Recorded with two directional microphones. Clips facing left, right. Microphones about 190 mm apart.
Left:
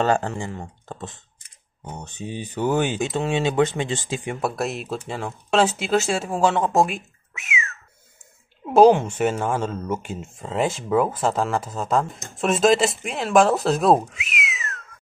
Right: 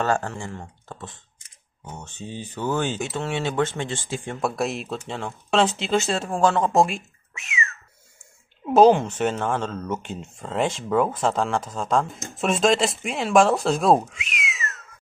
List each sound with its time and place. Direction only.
0.0 s speech: 20° left (ahead or behind)
4.4 s speech: centre (ahead or behind)